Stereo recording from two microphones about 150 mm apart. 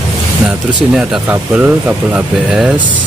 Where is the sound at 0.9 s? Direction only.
5° right (ahead or behind).